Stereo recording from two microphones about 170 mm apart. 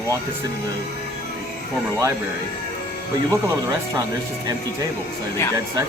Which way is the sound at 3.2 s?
20° right (ahead or behind).